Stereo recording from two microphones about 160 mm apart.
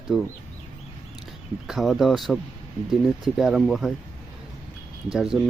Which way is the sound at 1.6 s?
Centre (ahead or behind).